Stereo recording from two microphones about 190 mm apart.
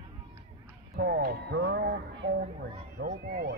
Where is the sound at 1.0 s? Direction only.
55° right (ahead or behind).